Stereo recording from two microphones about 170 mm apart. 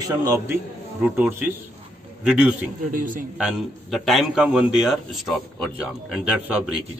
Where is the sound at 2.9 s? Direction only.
50° right (ahead or behind).